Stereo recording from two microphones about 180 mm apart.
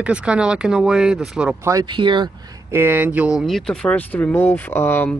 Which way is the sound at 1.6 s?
20° right (ahead or behind).